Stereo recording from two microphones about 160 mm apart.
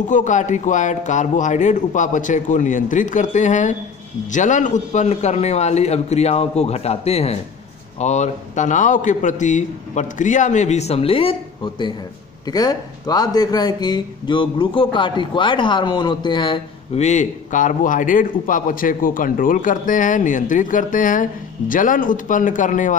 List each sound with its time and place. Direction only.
0.0 s a man's voice: 50° left (ahead or behind); by 17.0 s 30° left (ahead or behind)
17.0 s a man's voice: 50° left (ahead or behind)